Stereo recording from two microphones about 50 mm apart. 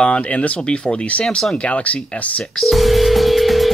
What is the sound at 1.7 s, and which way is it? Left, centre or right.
Speech, left.